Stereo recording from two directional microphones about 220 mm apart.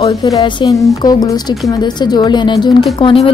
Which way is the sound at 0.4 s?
20° left (ahead or behind).